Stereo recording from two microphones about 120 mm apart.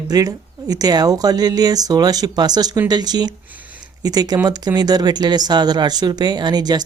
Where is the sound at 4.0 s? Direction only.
35° right (ahead or behind).